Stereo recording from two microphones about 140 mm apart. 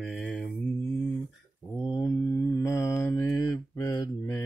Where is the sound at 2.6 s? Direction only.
20° left (ahead or behind).